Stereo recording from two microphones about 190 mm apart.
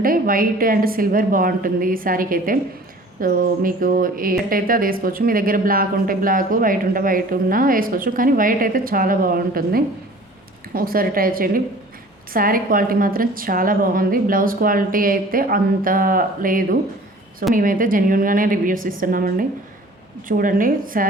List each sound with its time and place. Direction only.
0.0 s speech: 50° right (ahead or behind)